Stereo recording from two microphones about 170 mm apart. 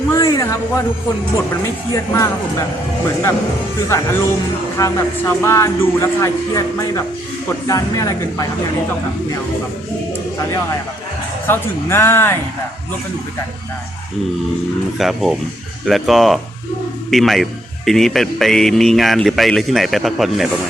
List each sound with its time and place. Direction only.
0.1 s a sound: 15° left (ahead or behind)
1.6 s speech: 20° left (ahead or behind)
3.8 s speech: 15° left (ahead or behind)
11.4 s speech: 15° left (ahead or behind)
14.9 s speech: centre (ahead or behind)